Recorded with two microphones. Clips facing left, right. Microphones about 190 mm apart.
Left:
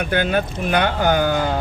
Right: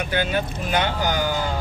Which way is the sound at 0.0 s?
55° left (ahead or behind).